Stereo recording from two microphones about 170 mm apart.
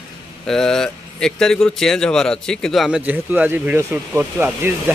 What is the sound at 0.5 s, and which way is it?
Speech, 5° left (ahead or behind).